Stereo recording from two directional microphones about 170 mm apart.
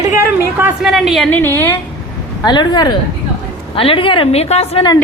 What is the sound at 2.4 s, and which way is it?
A woman's voice, 25° left (ahead or behind).